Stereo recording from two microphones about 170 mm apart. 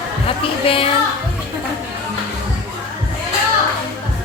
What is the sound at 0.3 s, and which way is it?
Speech, 35° left (ahead or behind).